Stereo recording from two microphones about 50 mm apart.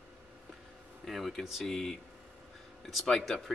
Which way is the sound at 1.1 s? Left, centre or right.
Centre.